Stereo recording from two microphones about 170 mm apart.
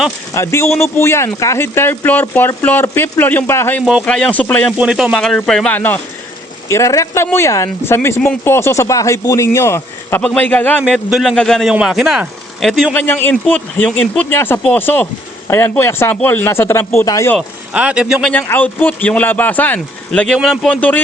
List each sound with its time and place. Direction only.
0.3 s speech: 15° left (ahead or behind)
4.8 s speech: 5° right (ahead or behind); by 10.8 s 10° left (ahead or behind)
10.9 s speech: centre (ahead or behind); by 17.3 s 15° left (ahead or behind)
17.7 s speech: 5° right (ahead or behind)
18.3 s speech: 10° left (ahead or behind)